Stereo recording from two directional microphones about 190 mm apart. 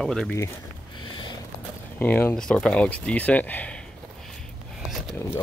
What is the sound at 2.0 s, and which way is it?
Speech, 10° left (ahead or behind).